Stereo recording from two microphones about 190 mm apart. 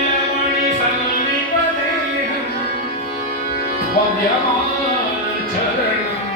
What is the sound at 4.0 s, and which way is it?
Music, 45° left (ahead or behind).